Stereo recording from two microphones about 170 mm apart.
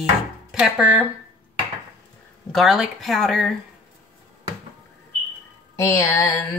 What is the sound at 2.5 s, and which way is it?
Speech, centre (ahead or behind).